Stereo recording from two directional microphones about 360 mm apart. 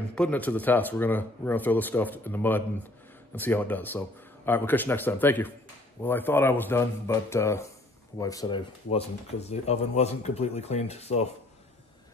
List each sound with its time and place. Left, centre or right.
0.1 s speech: centre